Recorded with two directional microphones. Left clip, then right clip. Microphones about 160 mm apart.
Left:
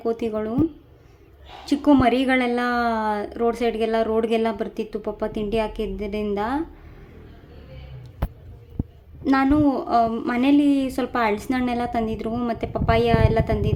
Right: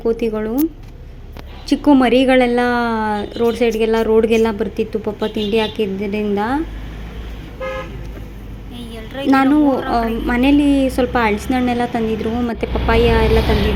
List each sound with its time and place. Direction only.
0.0 s a woman's voice: 25° right (ahead or behind)
1.6 s a woman's voice: 25° right (ahead or behind)
9.2 s a woman's voice: 30° right (ahead or behind)